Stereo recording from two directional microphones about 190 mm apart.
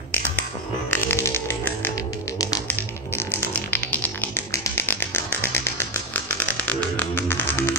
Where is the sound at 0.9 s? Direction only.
10° left (ahead or behind).